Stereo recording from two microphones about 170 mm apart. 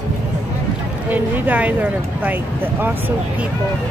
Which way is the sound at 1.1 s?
10° right (ahead or behind).